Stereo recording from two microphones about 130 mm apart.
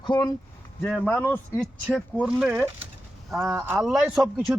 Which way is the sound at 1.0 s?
10° left (ahead or behind).